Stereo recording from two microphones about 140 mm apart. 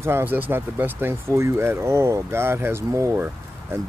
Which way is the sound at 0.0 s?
15° right (ahead or behind).